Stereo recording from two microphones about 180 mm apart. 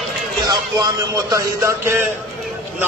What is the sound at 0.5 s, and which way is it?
Music, 20° right (ahead or behind).